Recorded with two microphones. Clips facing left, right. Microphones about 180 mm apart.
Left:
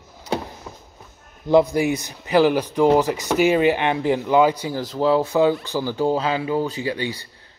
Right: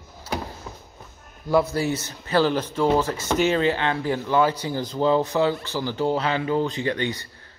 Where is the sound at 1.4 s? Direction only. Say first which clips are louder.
Left 5 dB; 15° left (ahead or behind).